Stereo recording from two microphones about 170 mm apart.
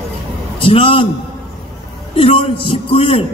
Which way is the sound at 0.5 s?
30° left (ahead or behind).